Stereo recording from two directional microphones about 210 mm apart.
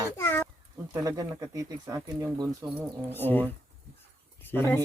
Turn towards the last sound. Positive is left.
turn(degrees=10)  # may be behind; listen again after turning